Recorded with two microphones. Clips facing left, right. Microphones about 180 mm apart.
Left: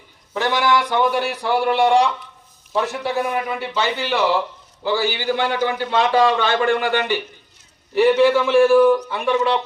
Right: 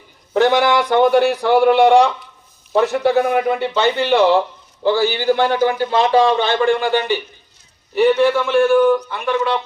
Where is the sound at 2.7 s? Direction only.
60° right (ahead or behind).